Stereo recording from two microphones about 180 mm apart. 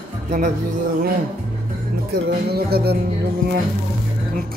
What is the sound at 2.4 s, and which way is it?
Music, 60° right (ahead or behind).